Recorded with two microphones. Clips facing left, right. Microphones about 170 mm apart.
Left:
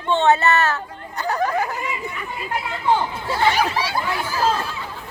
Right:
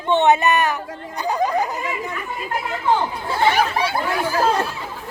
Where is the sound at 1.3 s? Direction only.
15° right (ahead or behind).